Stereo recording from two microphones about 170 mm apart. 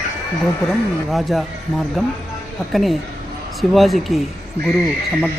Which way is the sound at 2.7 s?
Centre (ahead or behind).